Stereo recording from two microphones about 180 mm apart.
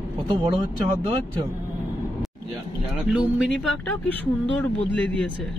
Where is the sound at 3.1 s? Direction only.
Centre (ahead or behind).